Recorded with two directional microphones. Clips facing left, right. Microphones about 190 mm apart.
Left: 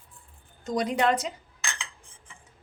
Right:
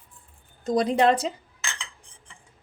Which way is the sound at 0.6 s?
30° right (ahead or behind).